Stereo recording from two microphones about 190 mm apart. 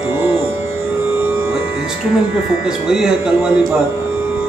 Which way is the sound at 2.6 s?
5° right (ahead or behind).